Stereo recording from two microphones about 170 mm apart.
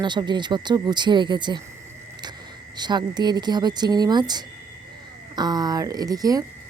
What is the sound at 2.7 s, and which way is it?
A woman's voice, 25° right (ahead or behind).